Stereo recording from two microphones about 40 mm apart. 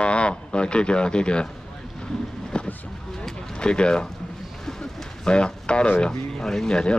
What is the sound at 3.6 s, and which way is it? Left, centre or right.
Speech, left.